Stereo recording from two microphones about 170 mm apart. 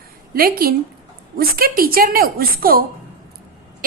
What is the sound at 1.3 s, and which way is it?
A woman's voice, 60° right (ahead or behind).